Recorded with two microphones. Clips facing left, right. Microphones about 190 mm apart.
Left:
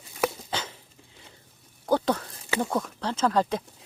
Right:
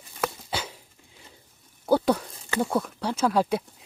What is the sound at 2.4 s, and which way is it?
Speech, 5° left (ahead or behind).